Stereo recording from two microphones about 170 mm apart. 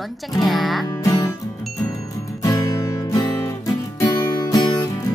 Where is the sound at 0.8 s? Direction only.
20° left (ahead or behind).